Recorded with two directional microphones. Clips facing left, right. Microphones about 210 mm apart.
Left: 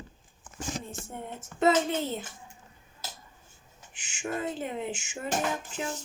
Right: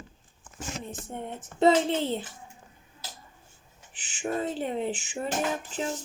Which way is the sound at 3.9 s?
35° right (ahead or behind).